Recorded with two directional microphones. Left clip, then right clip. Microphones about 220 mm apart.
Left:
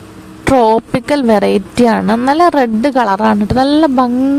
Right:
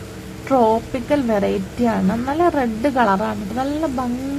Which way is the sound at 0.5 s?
50° left (ahead or behind).